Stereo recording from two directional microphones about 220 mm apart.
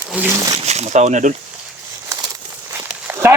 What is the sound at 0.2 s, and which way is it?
Speech, 5° right (ahead or behind).